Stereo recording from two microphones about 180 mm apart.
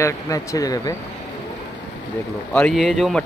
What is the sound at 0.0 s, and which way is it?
Speech, 15° left (ahead or behind).